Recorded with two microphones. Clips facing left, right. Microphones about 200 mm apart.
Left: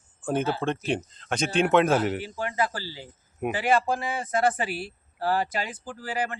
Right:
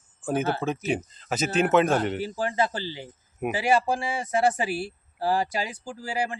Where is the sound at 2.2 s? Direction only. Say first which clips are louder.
Right 2 dB; 30° right (ahead or behind).